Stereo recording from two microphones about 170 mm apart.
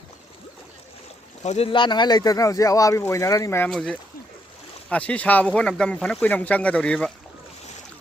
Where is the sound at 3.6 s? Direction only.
5° left (ahead or behind).